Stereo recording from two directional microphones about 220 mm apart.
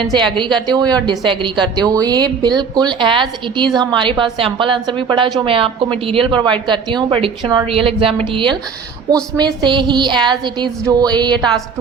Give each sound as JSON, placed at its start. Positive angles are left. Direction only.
{"t": 0.0, "sound": "a woman's voice", "side_deg": -20}